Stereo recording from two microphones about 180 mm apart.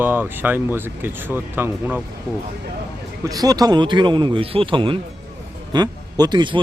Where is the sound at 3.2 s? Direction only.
20° right (ahead or behind).